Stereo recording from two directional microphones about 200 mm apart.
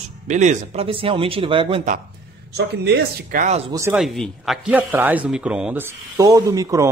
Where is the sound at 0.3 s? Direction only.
35° right (ahead or behind).